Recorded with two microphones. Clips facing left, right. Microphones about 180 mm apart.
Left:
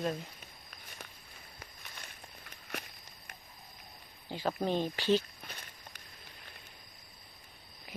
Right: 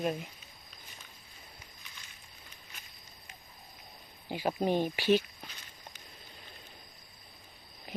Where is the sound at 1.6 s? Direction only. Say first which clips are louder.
Left 4 dB; 60° left (ahead or behind).